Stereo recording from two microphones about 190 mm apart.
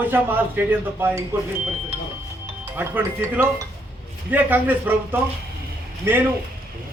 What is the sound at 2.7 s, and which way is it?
Speech, 10° right (ahead or behind).